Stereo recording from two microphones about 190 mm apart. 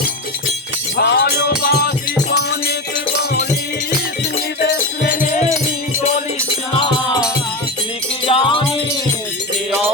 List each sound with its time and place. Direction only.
0.9 s music: 55° left (ahead or behind)
8.3 s music: 25° left (ahead or behind)